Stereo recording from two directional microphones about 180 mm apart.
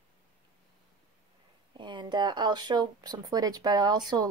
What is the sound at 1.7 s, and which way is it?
Speech, 25° right (ahead or behind).